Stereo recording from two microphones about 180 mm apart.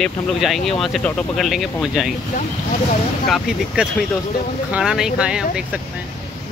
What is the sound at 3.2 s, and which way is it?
Speech, centre (ahead or behind).